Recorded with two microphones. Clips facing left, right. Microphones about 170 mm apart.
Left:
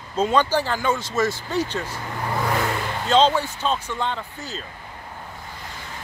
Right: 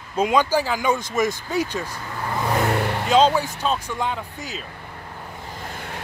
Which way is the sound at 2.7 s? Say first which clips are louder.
Right 5 dB; 60° right (ahead or behind).